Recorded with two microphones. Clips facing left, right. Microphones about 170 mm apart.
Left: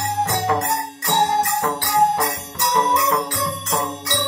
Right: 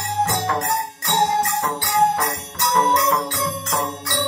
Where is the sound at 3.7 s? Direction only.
20° left (ahead or behind).